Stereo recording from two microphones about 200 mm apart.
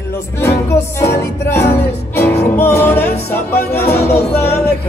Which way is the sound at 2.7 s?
55° left (ahead or behind).